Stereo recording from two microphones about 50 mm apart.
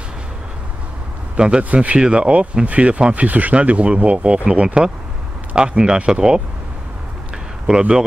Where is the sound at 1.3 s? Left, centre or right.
Right.